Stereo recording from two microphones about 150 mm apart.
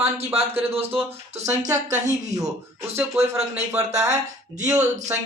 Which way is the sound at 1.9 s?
25° right (ahead or behind).